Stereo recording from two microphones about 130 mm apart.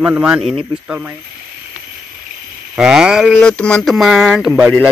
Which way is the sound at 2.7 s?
5° right (ahead or behind).